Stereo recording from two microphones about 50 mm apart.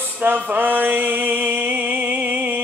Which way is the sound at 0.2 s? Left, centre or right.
Right.